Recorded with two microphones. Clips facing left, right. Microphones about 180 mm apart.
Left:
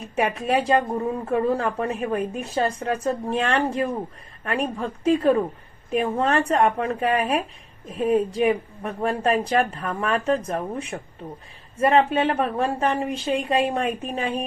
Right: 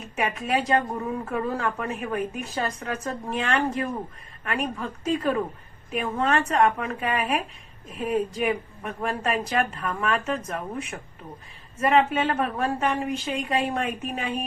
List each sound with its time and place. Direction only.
0.1 s a woman's voice: 30° left (ahead or behind)